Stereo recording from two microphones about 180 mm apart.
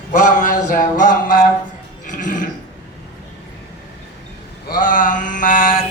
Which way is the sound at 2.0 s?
45° left (ahead or behind).